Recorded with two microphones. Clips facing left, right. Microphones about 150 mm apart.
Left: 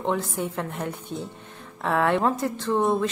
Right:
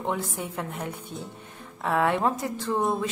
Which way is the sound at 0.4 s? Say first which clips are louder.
Left 5 dB; 5° right (ahead or behind).